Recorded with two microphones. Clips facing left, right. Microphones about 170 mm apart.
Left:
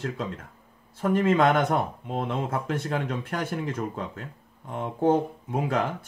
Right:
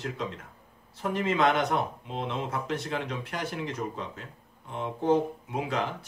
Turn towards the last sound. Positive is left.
turn(degrees=50)  # may be behind; listen again after turning